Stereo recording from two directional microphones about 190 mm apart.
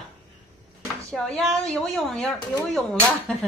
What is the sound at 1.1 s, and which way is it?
Speech, centre (ahead or behind).